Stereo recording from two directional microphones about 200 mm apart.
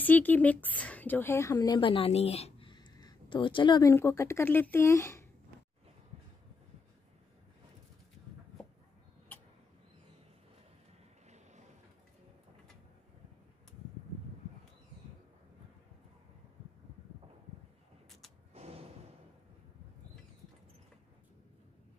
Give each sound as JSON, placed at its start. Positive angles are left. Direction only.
{"t": 0.0, "sound": "speech", "side_deg": 10}
{"t": 9.3, "sound": "tick-tock", "side_deg": 10}
{"t": 11.2, "sound": "boat", "side_deg": -35}
{"t": 18.5, "sound": "a sound", "side_deg": -30}